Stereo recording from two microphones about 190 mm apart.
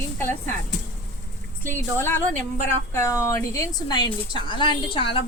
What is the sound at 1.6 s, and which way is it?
A woman's voice, 10° left (ahead or behind).